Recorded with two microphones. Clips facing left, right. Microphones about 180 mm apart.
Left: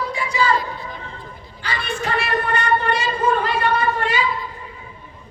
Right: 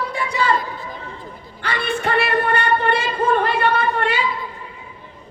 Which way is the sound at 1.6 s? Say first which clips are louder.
Right 3 dB; 60° right (ahead or behind).